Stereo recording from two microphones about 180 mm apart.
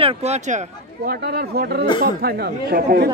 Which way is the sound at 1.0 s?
60° right (ahead or behind).